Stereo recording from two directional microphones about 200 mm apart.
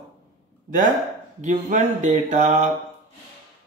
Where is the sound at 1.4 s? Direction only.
35° right (ahead or behind).